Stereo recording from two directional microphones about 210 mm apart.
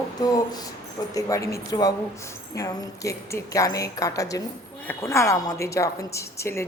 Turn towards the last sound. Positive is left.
turn(degrees=15)  # may be behind; listen again after turning